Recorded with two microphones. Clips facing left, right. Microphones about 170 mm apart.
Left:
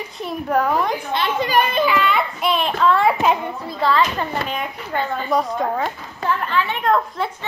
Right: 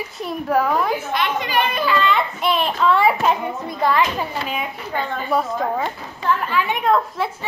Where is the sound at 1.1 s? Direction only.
30° left (ahead or behind).